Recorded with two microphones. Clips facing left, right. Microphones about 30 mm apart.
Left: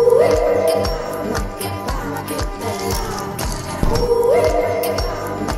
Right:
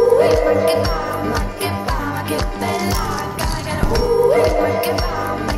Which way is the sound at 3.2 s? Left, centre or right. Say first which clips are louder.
Right 2 dB; right.